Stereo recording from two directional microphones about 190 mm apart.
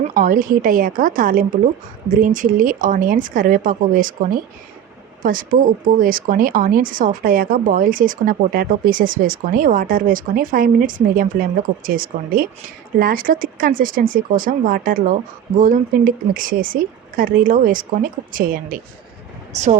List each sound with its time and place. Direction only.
0.0 s speech: 45° right (ahead or behind)